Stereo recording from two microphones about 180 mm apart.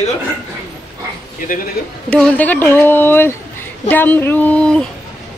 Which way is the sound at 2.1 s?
10° left (ahead or behind).